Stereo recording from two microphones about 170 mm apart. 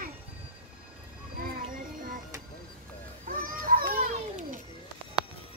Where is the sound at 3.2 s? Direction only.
55° right (ahead or behind).